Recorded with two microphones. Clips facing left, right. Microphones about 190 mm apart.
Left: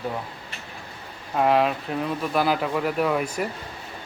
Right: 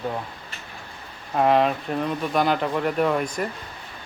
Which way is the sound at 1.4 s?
Centre (ahead or behind).